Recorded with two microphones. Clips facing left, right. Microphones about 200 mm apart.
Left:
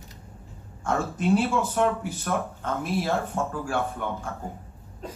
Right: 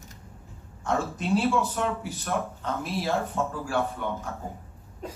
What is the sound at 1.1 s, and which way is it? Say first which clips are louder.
Speech: left 3 dB; 50° left (ahead or behind).